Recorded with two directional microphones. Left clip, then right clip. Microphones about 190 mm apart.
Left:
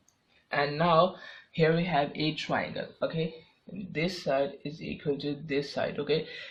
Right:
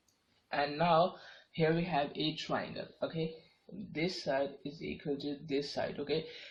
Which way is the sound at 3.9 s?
35° left (ahead or behind).